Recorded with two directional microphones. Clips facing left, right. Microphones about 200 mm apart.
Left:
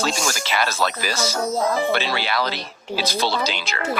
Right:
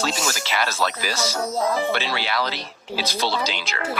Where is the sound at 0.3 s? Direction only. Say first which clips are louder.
Left 2 dB; 50° left (ahead or behind).